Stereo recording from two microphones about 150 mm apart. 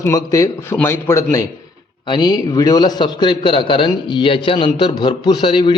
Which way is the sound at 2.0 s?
30° left (ahead or behind).